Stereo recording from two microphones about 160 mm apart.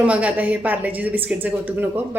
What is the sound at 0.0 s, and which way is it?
Speech, 10° right (ahead or behind).